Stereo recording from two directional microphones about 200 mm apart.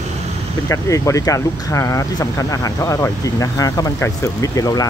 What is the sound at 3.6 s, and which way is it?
Speech, 15° left (ahead or behind).